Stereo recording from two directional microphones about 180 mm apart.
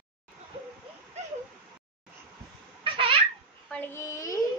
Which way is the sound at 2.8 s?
30° right (ahead or behind).